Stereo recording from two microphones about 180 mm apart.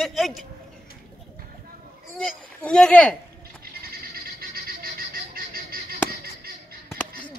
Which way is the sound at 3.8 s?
55° right (ahead or behind).